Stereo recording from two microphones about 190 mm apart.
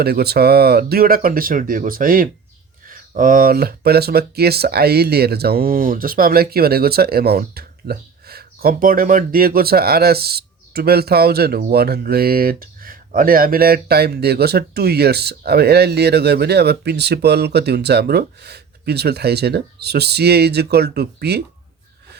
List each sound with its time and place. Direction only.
0.0 s speech: 55° right (ahead or behind)